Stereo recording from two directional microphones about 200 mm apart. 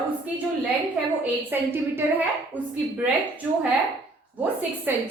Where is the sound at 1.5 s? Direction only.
10° right (ahead or behind).